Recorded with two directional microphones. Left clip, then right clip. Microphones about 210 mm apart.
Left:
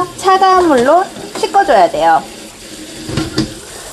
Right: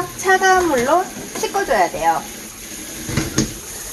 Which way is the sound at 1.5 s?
40° left (ahead or behind).